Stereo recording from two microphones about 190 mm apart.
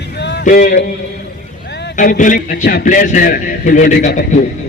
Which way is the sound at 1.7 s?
65° left (ahead or behind).